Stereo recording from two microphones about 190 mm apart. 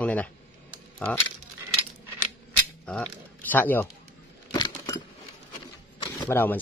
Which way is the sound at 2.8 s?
5° left (ahead or behind).